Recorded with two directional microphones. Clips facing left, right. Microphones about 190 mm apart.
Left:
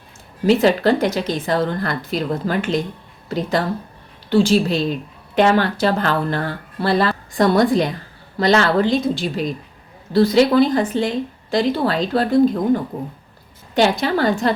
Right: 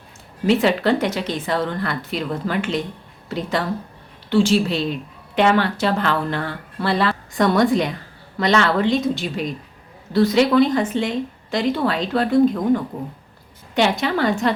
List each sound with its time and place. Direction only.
0.4 s speech: 40° left (ahead or behind)